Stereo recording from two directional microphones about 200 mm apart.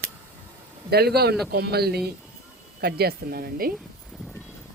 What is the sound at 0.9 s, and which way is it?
Speech, 50° right (ahead or behind).